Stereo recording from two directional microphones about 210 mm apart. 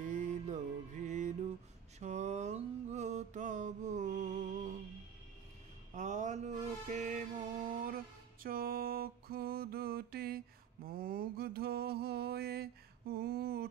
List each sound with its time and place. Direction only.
0.0 s music: 35° right (ahead or behind)
2.0 s mantra: 35° right (ahead or behind)
5.9 s mantra: 35° right (ahead or behind)